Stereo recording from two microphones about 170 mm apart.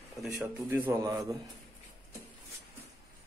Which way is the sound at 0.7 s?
15° right (ahead or behind).